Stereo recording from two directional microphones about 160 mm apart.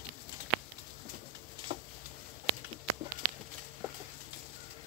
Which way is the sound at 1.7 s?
40° right (ahead or behind).